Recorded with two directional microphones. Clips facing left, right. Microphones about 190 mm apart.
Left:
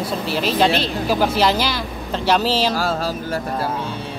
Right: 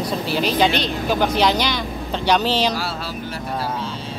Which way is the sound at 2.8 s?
45° left (ahead or behind).